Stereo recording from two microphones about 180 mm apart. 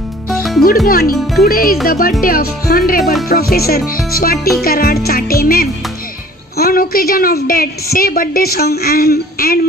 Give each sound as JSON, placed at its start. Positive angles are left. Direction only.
{"t": 0.3, "sound": "music", "side_deg": 0}
{"t": 0.8, "sound": "a woman's voice", "side_deg": 55}
{"t": 3.0, "sound": "speech", "side_deg": 0}
{"t": 3.3, "sound": "a woman's voice", "side_deg": 55}